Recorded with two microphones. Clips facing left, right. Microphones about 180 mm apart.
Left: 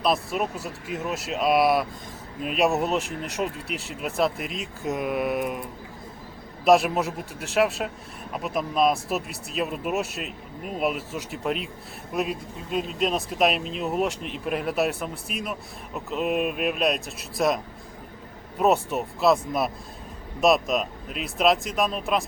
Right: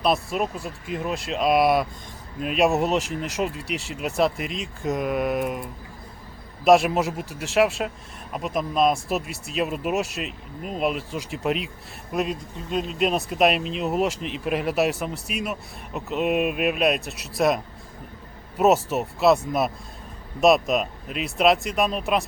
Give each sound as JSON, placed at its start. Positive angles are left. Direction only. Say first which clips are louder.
{"t": 0.0, "sound": "speech", "louder": "right 1 dB", "side_deg": 0}
{"t": 6.7, "sound": "speech", "louder": "right 2 dB", "side_deg": 0}